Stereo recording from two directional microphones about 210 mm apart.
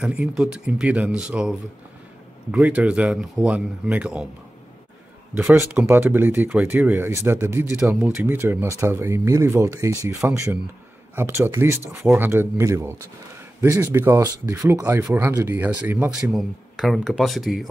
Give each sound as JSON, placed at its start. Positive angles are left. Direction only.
{"t": 0.0, "sound": "speech", "side_deg": -5}
{"t": 5.3, "sound": "speech", "side_deg": -10}